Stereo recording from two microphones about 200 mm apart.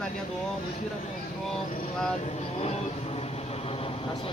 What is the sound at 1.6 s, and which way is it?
Speech, 40° left (ahead or behind).